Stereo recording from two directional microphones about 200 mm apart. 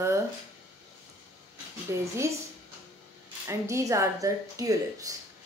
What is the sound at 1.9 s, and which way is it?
Speech, 15° right (ahead or behind).